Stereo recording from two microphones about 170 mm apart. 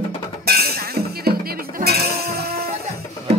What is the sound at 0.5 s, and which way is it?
Music, 65° right (ahead or behind).